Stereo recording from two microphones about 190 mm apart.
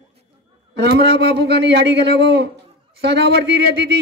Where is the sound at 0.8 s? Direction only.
60° right (ahead or behind).